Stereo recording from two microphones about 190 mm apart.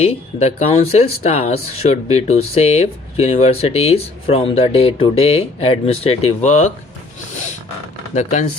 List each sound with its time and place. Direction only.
0.0 s speech: 35° left (ahead or behind)
8.1 s speech: 40° left (ahead or behind)